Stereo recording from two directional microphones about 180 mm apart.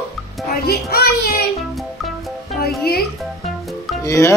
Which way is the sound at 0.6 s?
60° left (ahead or behind).